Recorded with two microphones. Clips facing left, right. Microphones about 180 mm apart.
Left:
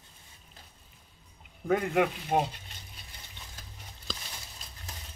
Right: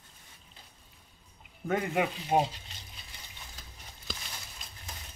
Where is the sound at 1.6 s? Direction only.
Centre (ahead or behind).